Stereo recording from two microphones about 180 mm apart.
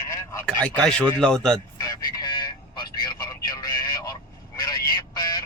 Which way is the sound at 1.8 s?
20° left (ahead or behind).